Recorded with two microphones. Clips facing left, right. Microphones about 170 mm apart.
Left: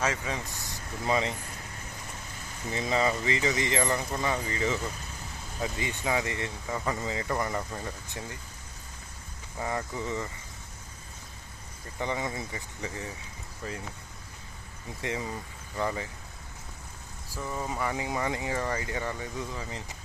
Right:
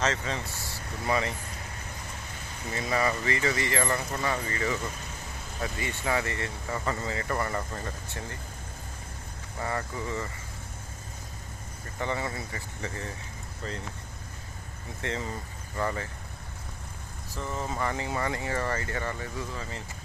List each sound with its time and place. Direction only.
0.0 s speech: 10° left (ahead or behind)
2.7 s speech: 20° left (ahead or behind)
9.6 s speech: 15° left (ahead or behind)
11.9 s speech: 15° left (ahead or behind)
15.0 s speech: 10° left (ahead or behind)
17.3 s speech: 10° left (ahead or behind)